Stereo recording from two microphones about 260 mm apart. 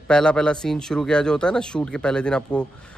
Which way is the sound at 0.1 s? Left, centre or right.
Centre.